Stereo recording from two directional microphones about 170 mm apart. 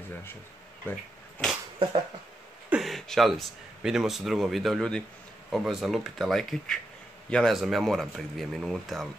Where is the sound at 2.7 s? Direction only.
Centre (ahead or behind).